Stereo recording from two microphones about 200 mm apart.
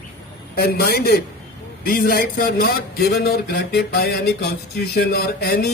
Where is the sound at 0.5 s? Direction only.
50° left (ahead or behind).